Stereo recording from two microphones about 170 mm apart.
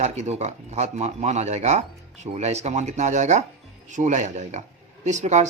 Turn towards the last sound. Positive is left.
turn(degrees=-45)  # may be behind; listen again after turning